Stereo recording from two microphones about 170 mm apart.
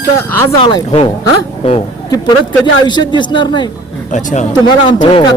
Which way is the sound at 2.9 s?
25° left (ahead or behind).